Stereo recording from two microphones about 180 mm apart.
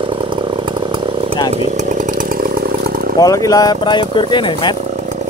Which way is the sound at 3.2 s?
20° left (ahead or behind).